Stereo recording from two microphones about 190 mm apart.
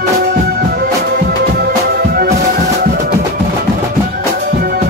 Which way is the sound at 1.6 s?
55° right (ahead or behind).